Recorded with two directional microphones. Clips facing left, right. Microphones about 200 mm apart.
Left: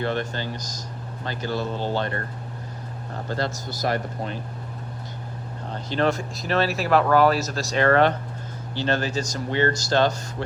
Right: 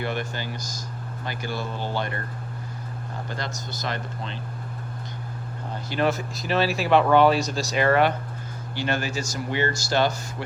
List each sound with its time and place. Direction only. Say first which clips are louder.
0.0 s speech: left 3 dB; 10° right (ahead or behind)
3.2 s speech: left 8 dB; 15° right (ahead or behind)
5.9 s speech: left 1 dB; 5° right (ahead or behind)